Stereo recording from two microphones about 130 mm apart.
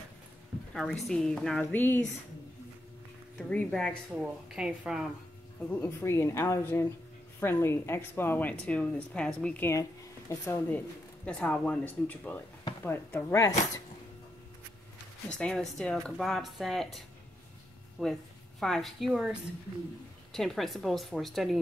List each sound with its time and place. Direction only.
0.7 s a woman's voice: centre (ahead or behind)
3.4 s a woman's voice: 5° left (ahead or behind)
4.2 s a woman's voice: 10° right (ahead or behind)
5.7 s a woman's voice: 20° left (ahead or behind)
9.8 s speech: 25° left (ahead or behind)
11.2 s a woman's voice: 10° left (ahead or behind)
15.3 s a woman's voice: 5° left (ahead or behind)
20.3 s a woman's voice: centre (ahead or behind)